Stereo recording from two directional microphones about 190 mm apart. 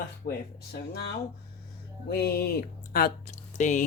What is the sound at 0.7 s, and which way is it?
Speech, 60° left (ahead or behind).